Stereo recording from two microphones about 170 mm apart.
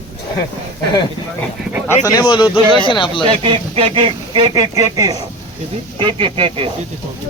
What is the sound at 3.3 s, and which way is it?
Speech, 30° right (ahead or behind).